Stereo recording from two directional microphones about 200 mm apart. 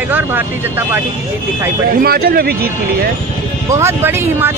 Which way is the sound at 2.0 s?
50° right (ahead or behind).